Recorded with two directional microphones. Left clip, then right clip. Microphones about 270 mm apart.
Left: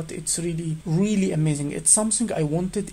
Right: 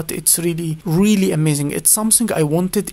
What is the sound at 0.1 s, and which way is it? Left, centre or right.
Speech, right.